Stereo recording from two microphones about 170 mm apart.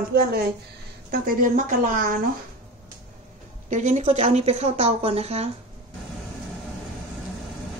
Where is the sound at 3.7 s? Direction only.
45° right (ahead or behind).